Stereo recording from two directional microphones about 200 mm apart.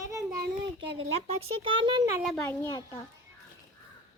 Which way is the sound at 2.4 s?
10° left (ahead or behind).